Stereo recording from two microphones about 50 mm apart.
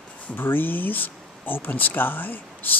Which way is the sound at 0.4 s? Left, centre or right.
Left.